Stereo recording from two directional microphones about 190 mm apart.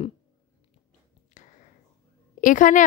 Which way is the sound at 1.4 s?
40° left (ahead or behind).